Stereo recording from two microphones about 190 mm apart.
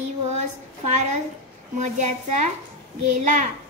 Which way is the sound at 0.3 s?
35° right (ahead or behind).